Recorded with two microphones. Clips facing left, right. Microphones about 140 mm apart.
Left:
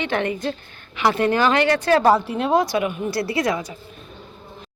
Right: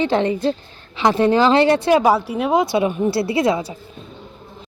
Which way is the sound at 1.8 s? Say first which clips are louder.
Right 1 dB; 10° right (ahead or behind).